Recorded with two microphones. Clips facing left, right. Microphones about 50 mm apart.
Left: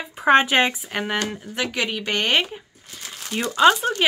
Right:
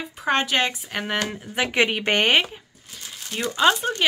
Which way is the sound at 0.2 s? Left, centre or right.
Left.